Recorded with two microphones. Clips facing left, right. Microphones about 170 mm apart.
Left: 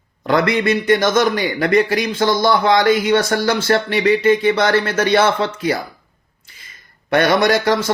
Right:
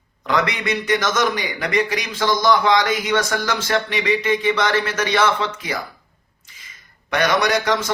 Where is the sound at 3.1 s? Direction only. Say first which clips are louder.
Left 5 dB; 30° left (ahead or behind).